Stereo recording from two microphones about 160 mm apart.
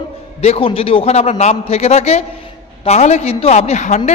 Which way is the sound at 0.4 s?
40° left (ahead or behind).